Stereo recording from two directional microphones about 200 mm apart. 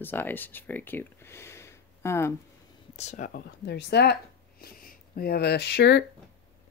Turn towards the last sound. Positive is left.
turn(degrees=55)  # may be behind; listen again after turning